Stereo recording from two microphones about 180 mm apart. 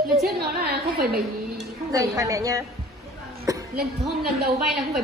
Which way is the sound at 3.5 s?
20° right (ahead or behind).